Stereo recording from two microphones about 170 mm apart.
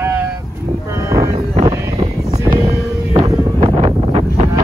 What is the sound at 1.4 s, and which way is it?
Wind noise, 35° right (ahead or behind).